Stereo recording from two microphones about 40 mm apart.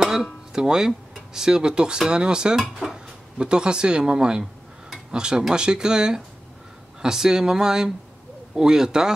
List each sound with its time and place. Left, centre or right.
0.0 s speech: centre